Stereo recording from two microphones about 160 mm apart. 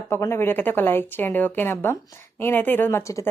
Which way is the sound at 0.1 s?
15° left (ahead or behind).